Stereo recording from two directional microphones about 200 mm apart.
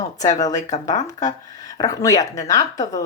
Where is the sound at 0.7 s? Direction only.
35° left (ahead or behind).